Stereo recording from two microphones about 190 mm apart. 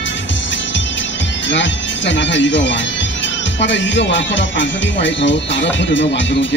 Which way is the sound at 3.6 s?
70° left (ahead or behind).